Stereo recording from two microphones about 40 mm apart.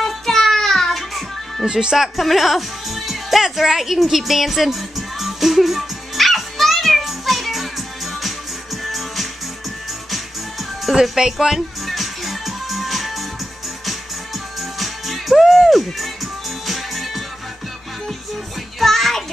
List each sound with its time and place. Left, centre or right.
0.0 s music: centre
1.7 s speech: centre
2.0 s music: centre
8.8 s music: centre
11.0 s speech: centre
11.8 s music: centre
14.8 s music: centre
15.3 s music: centre
16.6 s music: centre
18.8 s music: centre